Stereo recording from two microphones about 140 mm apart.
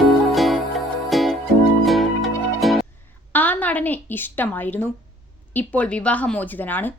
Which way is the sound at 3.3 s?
10° left (ahead or behind).